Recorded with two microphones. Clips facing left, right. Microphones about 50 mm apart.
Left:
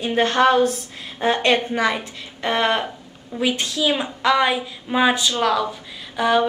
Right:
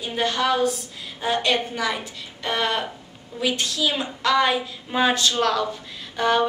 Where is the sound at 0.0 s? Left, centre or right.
Left.